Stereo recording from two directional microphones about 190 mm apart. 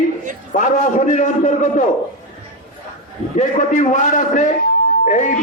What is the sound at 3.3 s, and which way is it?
Speech, 40° left (ahead or behind).